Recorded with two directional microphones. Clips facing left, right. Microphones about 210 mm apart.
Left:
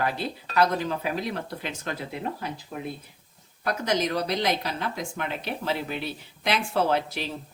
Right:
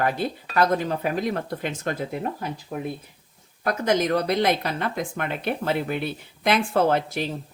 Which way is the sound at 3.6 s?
50° right (ahead or behind).